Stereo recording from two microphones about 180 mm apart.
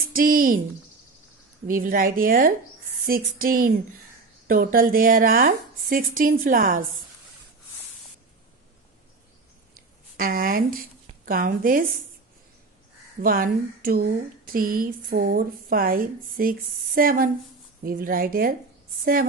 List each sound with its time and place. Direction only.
0.1 s speech: 50° right (ahead or behind)
1.7 s speech: 50° right (ahead or behind)
10.1 s speech: 55° right (ahead or behind)
13.2 s speech: 55° right (ahead or behind)